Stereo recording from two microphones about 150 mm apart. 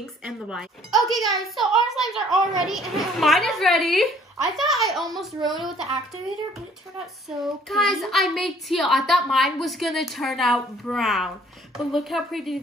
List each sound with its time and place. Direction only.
0.0 s a child's voice: 5° right (ahead or behind)
7.2 s a child's voice: centre (ahead or behind)